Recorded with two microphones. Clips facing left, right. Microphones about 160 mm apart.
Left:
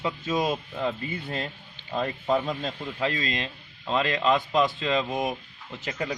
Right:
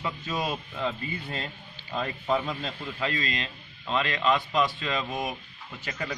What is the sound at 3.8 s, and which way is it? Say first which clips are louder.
Speech: left 2 dB; 30° left (ahead or behind).